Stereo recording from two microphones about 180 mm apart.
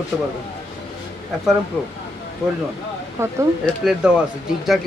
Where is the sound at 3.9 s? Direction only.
5° right (ahead or behind).